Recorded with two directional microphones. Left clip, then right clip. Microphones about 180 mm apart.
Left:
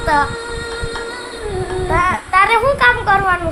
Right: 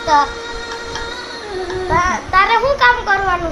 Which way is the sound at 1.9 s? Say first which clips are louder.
Even; 15° left (ahead or behind).